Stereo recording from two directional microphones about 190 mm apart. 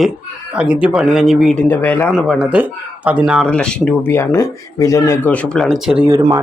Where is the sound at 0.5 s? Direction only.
5° right (ahead or behind); by 2.0 s 10° left (ahead or behind).